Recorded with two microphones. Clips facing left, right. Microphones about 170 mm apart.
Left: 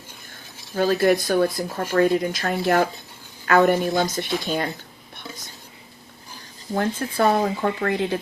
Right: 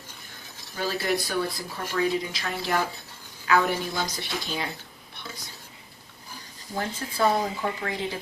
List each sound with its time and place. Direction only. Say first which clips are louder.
0.8 s speech: left 9 dB; 50° left (ahead or behind)
6.7 s speech: left 6 dB; 55° left (ahead or behind)